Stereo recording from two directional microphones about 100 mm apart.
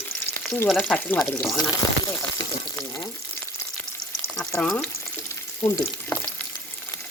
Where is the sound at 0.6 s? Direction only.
5° left (ahead or behind).